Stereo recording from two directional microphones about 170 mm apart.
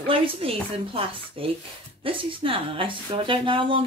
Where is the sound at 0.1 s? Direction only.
30° right (ahead or behind).